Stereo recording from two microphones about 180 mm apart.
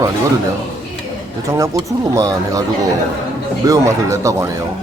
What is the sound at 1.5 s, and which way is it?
Speech, 20° right (ahead or behind).